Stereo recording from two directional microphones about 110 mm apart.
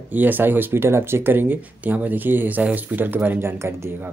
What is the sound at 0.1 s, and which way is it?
Speech, 15° right (ahead or behind).